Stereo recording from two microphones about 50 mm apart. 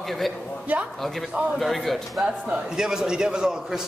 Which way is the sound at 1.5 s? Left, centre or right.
Centre.